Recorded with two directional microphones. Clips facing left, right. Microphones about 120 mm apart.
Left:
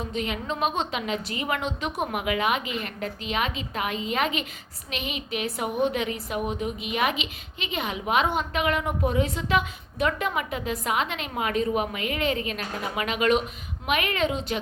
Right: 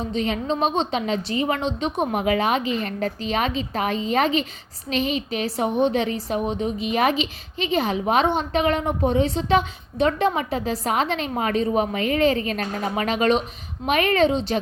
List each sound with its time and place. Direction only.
0.1 s a woman's voice: 30° right (ahead or behind)